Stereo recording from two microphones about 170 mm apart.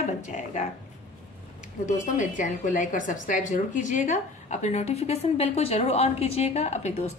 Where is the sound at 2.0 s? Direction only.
50° left (ahead or behind).